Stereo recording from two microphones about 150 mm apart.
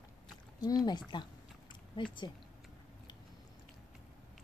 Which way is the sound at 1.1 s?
30° left (ahead or behind).